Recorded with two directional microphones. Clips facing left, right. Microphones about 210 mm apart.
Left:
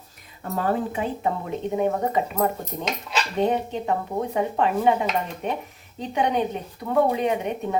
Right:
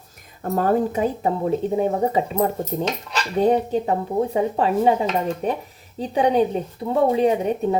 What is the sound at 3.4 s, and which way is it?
A woman's voice, 35° right (ahead or behind).